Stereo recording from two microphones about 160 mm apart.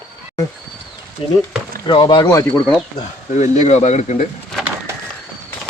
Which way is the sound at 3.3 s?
50° left (ahead or behind).